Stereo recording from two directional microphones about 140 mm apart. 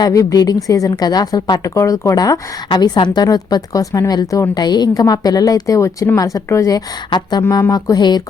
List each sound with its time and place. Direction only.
0.0 s a woman's voice: 25° left (ahead or behind)